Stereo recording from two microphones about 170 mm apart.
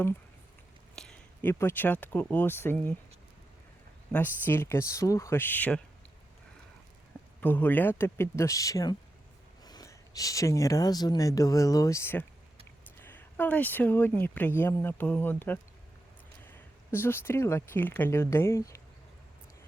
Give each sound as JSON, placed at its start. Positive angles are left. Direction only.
{"t": 0.9, "sound": "speech", "side_deg": 5}
{"t": 4.1, "sound": "speech", "side_deg": 10}
{"t": 7.4, "sound": "speech", "side_deg": 10}